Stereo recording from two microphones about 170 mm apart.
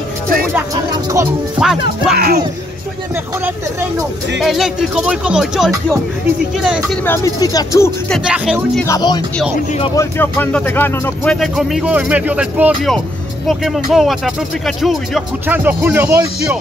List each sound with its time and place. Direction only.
1.6 s speech: 5° right (ahead or behind)
2.1 s speech: 65° right (ahead or behind)
4.4 s speech: centre (ahead or behind)
7.1 s speech: 20° left (ahead or behind)
8.1 s speech: centre (ahead or behind)
8.8 s speech: 25° left (ahead or behind); by 16.5 s 15° right (ahead or behind)